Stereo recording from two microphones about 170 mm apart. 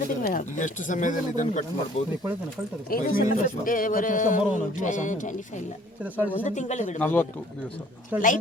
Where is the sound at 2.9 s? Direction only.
55° left (ahead or behind).